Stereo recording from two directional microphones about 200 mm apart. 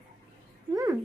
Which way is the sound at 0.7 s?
15° right (ahead or behind).